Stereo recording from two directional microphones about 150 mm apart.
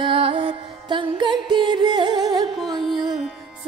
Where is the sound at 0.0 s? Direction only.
35° right (ahead or behind).